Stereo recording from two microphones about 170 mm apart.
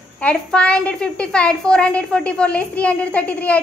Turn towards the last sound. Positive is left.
turn(degrees=10)  # may be behind; listen again after turning